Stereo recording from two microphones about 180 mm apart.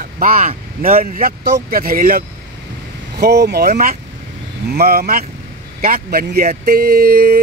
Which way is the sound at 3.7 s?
40° right (ahead or behind).